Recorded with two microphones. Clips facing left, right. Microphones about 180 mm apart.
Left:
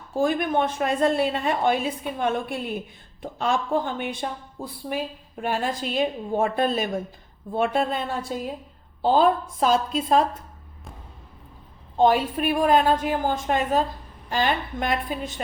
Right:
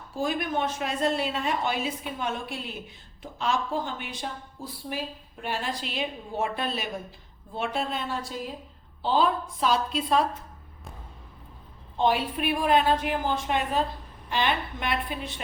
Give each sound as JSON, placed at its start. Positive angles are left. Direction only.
{"t": 0.1, "sound": "a woman's voice", "side_deg": 55}
{"t": 11.9, "sound": "a woman's voice", "side_deg": 45}